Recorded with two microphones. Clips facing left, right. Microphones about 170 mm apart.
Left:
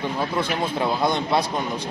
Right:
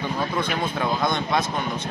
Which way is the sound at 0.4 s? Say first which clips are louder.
Left 2 dB; 30° left (ahead or behind).